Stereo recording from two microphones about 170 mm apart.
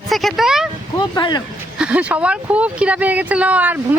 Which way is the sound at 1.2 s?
25° left (ahead or behind).